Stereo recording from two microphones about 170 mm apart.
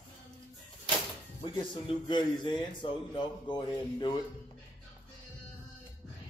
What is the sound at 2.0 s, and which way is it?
Speech, 25° left (ahead or behind).